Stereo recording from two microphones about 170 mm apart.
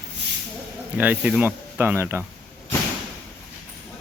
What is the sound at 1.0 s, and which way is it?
Speech, 10° right (ahead or behind).